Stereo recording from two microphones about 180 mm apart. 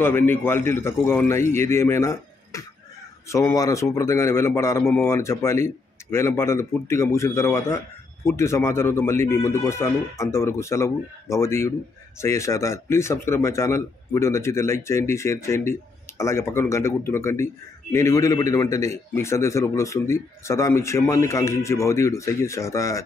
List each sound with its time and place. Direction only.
0.0 s speech: 10° left (ahead or behind)